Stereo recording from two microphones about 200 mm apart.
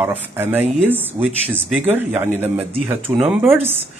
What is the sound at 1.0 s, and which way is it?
Speech, 5° left (ahead or behind).